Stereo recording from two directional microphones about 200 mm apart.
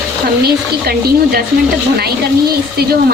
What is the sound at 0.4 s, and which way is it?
Speech, 50° right (ahead or behind).